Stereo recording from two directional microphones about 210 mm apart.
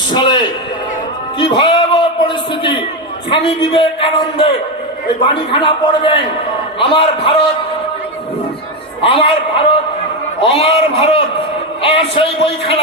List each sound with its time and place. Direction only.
0.1 s a man's voice: 20° left (ahead or behind)
1.4 s a sound: 25° left (ahead or behind)
3.2 s a man's voice: 25° left (ahead or behind)
9.0 s a man's voice: 25° left (ahead or behind)